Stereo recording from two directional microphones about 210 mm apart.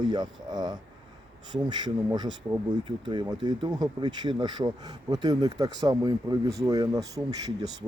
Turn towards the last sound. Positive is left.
turn(degrees=-20)  # may be behind; listen again after turning